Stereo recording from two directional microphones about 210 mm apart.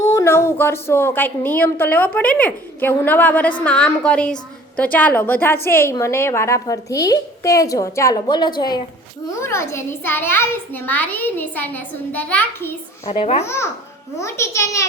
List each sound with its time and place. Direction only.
0.0 s a woman's voice: 15° left (ahead or behind)
13.1 s a child's voice: 30° left (ahead or behind)
14.2 s a woman's voice: 15° left (ahead or behind)